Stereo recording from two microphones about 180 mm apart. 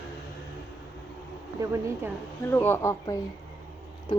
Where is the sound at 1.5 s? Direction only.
15° right (ahead or behind).